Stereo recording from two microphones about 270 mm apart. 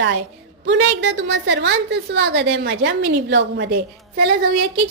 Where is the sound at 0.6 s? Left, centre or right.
Right.